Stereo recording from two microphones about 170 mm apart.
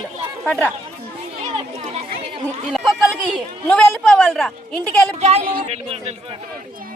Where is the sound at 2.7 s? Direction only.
Centre (ahead or behind).